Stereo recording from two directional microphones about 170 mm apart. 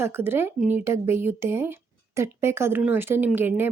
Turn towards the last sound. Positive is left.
turn(degrees=-10)  # may be behind; listen again after turning